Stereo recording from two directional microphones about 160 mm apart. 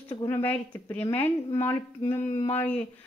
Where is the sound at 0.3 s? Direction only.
15° left (ahead or behind).